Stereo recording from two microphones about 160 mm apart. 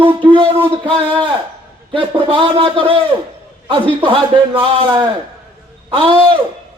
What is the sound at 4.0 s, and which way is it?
A man's voice, 35° right (ahead or behind).